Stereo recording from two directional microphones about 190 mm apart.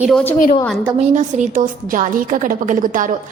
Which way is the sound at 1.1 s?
45° right (ahead or behind).